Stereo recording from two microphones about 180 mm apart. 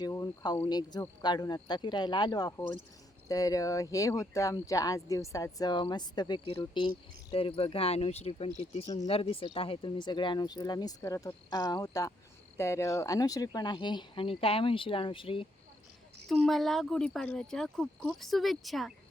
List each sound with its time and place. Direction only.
0.0 s speech: 20° left (ahead or behind)
16.3 s speech: centre (ahead or behind)